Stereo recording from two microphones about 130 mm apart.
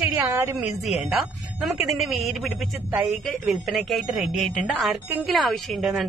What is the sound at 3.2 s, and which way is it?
A woman's voice, centre (ahead or behind).